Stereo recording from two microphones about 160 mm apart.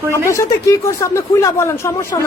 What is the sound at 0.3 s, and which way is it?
Speech, 20° left (ahead or behind).